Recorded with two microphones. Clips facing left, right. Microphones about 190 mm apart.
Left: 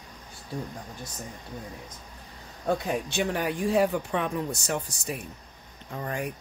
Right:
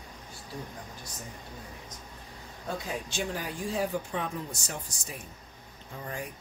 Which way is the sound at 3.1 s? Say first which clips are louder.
Left 6 dB; 65° left (ahead or behind).